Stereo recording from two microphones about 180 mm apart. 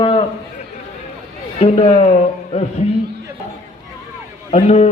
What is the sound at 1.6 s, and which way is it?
A man's voice, 35° left (ahead or behind).